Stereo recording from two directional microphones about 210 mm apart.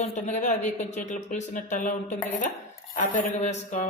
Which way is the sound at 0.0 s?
35° left (ahead or behind).